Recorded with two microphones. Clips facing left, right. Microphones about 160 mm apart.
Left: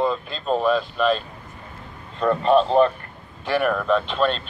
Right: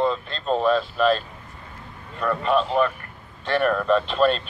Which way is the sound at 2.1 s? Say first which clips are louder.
Left 4 dB; 30° left (ahead or behind).